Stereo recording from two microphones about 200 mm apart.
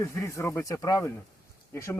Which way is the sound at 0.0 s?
15° left (ahead or behind).